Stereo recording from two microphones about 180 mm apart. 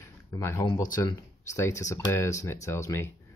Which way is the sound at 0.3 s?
15° left (ahead or behind).